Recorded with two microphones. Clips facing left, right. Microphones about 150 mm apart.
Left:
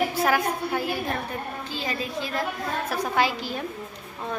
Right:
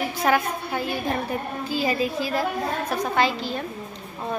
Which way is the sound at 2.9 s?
10° left (ahead or behind).